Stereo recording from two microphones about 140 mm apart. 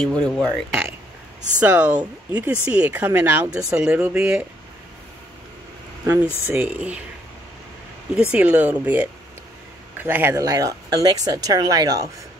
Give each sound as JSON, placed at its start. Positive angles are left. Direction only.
{"t": 0.0, "sound": "speech", "side_deg": 5}
{"t": 1.6, "sound": "speech", "side_deg": -10}
{"t": 6.4, "sound": "speech", "side_deg": -15}
{"t": 8.1, "sound": "speech", "side_deg": -10}